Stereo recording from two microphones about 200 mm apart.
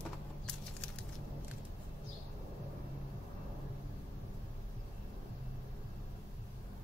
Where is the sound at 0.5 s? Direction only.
5° left (ahead or behind).